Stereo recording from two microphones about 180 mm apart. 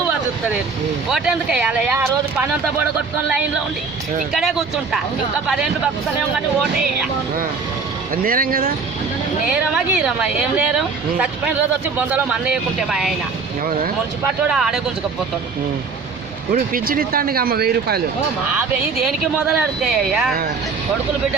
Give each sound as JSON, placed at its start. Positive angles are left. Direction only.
{"t": 1.1, "sound": "speech", "side_deg": -5}
{"t": 4.4, "sound": "speech", "side_deg": 0}
{"t": 8.1, "sound": "speech", "side_deg": -55}
{"t": 9.7, "sound": "speech", "side_deg": -5}
{"t": 14.5, "sound": "speech", "side_deg": 0}
{"t": 16.5, "sound": "speech", "side_deg": -50}
{"t": 19.0, "sound": "speech", "side_deg": -5}